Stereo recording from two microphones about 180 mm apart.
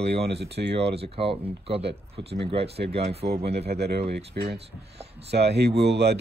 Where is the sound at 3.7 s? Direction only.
65° right (ahead or behind).